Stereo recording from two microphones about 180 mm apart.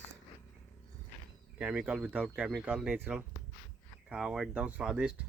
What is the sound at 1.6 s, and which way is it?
Speech, 5° right (ahead or behind).